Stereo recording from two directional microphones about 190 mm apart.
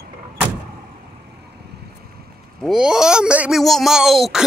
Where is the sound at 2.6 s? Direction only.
5° right (ahead or behind).